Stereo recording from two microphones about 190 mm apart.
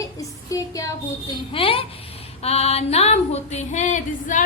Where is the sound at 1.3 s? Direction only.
30° left (ahead or behind).